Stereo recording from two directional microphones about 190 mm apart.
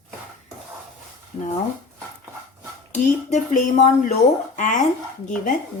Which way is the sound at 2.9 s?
40° left (ahead or behind).